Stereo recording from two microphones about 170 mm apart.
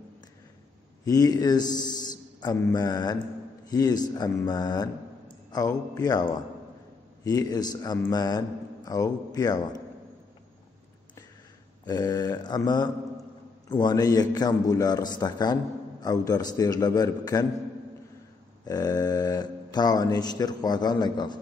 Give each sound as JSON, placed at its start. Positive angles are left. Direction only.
{"t": 1.0, "sound": "a man's voice", "side_deg": 20}
{"t": 7.2, "sound": "a man's voice", "side_deg": 20}
{"t": 11.8, "sound": "a man's voice", "side_deg": 25}
{"t": 18.7, "sound": "a man's voice", "side_deg": 20}